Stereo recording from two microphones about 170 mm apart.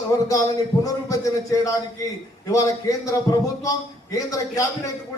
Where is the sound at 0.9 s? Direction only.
20° left (ahead or behind).